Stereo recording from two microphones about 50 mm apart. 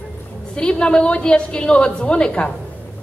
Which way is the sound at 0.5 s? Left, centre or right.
Centre.